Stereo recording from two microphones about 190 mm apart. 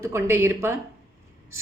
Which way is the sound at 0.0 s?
15° right (ahead or behind).